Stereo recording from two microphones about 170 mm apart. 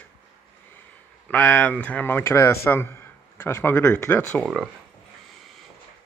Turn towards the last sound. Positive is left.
turn(degrees=10)  # may be behind; listen again after turning